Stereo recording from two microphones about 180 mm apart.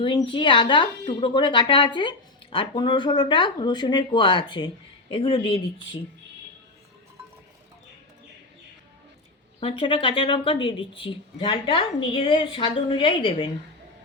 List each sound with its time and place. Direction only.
0.0 s speech: 25° left (ahead or behind)
9.6 s speech: 30° left (ahead or behind)